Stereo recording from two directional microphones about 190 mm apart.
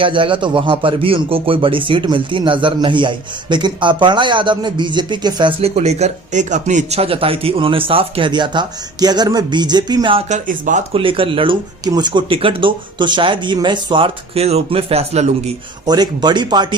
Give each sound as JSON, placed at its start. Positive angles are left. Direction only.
{"t": 0.0, "sound": "speech", "side_deg": -25}
{"t": 10.9, "sound": "speech", "side_deg": -30}
{"t": 15.9, "sound": "speech", "side_deg": -20}